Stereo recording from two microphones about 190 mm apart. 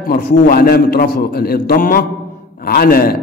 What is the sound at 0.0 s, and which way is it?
Speech, 45° left (ahead or behind).